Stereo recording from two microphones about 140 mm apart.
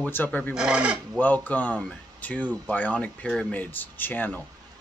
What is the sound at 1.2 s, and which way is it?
Speech, 10° left (ahead or behind).